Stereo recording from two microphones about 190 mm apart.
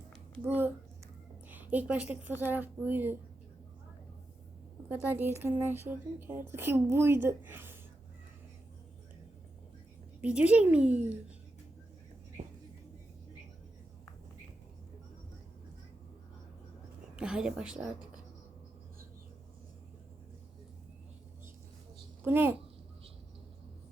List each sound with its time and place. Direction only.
0.4 s a woman's voice: 10° right (ahead or behind)
5.0 s a woman's voice: 10° right (ahead or behind)
10.2 s a woman's voice: 5° right (ahead or behind)
12.4 s music: 35° right (ahead or behind)
17.2 s a woman's voice: 5° right (ahead or behind)
22.2 s a child's voice: 10° right (ahead or behind)